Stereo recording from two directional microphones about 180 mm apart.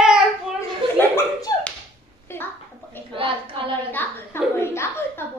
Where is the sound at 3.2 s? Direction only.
30° right (ahead or behind).